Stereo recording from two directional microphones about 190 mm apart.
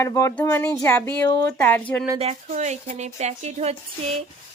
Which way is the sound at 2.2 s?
35° right (ahead or behind).